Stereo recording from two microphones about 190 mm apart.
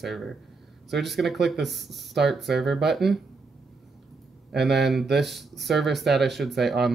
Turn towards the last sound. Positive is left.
turn(degrees=0)  # may be behind; listen again after turning